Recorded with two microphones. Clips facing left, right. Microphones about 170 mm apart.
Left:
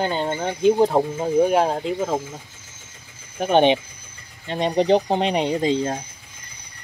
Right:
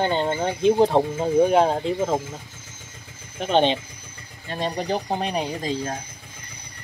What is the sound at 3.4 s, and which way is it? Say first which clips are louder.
Speech: left 3 dB; 15° left (ahead or behind).